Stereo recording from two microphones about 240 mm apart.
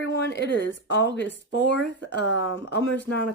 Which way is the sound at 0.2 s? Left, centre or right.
Left.